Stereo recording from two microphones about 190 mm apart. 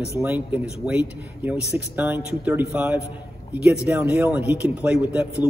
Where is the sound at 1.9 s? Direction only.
10° right (ahead or behind).